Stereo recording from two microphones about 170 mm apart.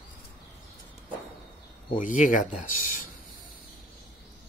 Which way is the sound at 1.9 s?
50° left (ahead or behind).